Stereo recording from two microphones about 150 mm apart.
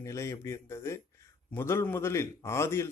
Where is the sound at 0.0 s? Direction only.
20° left (ahead or behind).